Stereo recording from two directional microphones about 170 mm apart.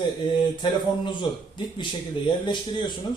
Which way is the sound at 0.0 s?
25° left (ahead or behind).